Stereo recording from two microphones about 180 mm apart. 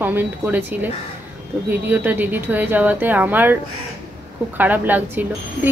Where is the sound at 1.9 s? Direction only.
10° right (ahead or behind).